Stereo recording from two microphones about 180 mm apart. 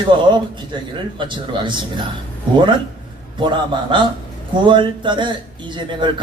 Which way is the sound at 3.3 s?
25° right (ahead or behind).